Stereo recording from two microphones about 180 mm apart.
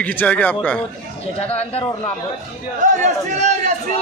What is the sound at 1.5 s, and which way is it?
Speech, 35° left (ahead or behind).